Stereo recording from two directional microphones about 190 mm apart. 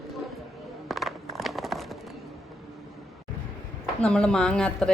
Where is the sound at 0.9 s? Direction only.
Centre (ahead or behind).